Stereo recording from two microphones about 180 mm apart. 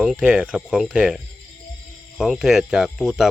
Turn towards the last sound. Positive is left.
turn(degrees=0)  # may be behind; listen again after turning